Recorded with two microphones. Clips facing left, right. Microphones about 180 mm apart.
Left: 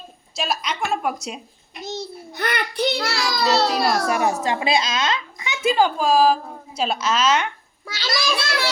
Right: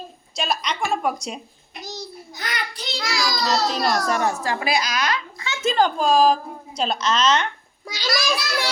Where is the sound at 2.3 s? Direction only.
60° left (ahead or behind).